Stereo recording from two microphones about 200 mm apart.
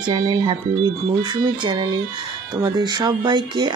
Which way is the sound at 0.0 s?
25° right (ahead or behind).